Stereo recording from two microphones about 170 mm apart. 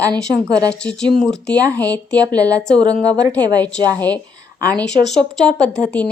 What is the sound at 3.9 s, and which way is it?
Speech, 10° left (ahead or behind).